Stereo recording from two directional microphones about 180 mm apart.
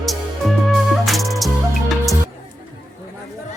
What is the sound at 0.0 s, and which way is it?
Music, centre (ahead or behind).